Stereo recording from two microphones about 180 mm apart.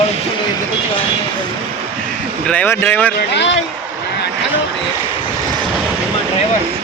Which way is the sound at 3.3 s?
90° left.